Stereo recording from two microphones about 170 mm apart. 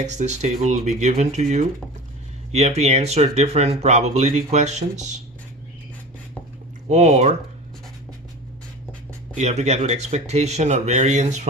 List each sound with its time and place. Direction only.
0.0 s speech: 45° right (ahead or behind)
6.8 s speech: 40° right (ahead or behind)
9.3 s speech: 40° right (ahead or behind)